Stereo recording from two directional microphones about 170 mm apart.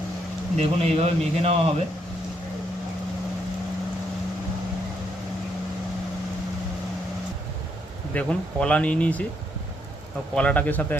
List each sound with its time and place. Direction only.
0.6 s speech: 35° right (ahead or behind)
8.1 s speech: 5° left (ahead or behind)
10.3 s speech: 10° left (ahead or behind)